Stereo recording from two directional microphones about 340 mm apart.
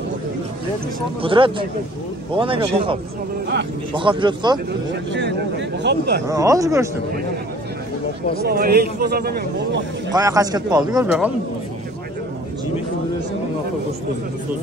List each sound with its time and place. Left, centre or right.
1.2 s a man's voice: centre
5.1 s speech: right
6.2 s a man's voice: centre
8.5 s a man's voice: right
10.1 s a man's voice: centre